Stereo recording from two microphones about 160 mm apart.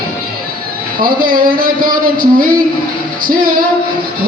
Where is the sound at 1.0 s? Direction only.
65° right (ahead or behind).